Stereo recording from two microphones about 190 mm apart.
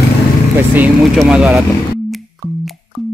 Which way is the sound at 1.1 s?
5° right (ahead or behind).